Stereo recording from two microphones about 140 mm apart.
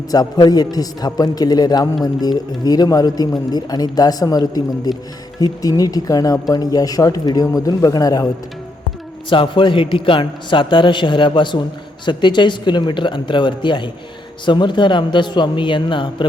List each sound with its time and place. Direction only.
0.1 s a man's voice: 30° left (ahead or behind)
9.3 s a man's voice: 35° left (ahead or behind)